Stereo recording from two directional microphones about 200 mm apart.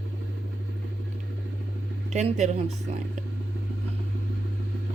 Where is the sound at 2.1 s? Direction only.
35° right (ahead or behind).